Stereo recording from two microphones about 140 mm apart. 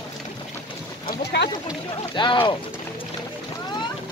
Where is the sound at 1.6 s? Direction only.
35° left (ahead or behind).